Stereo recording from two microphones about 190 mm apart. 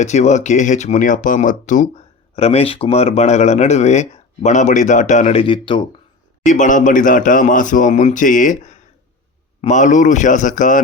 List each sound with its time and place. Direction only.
0.0 s speech: 35° left (ahead or behind)
6.4 s speech: 40° left (ahead or behind)